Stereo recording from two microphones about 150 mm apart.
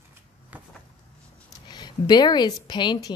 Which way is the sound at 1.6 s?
30° left (ahead or behind).